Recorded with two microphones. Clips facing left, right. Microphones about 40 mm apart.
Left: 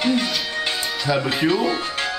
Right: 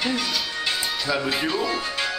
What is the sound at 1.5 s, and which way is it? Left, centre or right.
Music, left.